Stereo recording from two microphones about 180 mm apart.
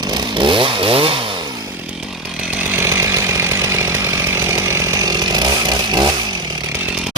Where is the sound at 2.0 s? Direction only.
5° right (ahead or behind).